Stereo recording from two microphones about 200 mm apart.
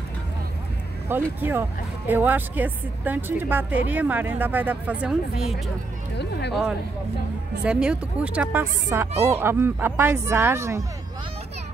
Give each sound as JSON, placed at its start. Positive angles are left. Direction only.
{"t": 1.0, "sound": "speech", "side_deg": -10}
{"t": 6.1, "sound": "speech", "side_deg": 55}
{"t": 7.6, "sound": "speech", "side_deg": -5}